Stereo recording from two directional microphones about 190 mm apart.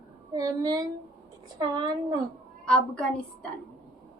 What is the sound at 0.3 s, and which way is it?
A woman's voice, 20° right (ahead or behind).